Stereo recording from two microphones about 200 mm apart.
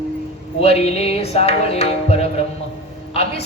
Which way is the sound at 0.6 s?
30° left (ahead or behind).